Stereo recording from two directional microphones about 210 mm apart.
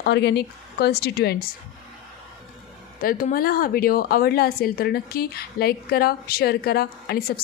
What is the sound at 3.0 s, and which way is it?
A woman's voice, 45° left (ahead or behind).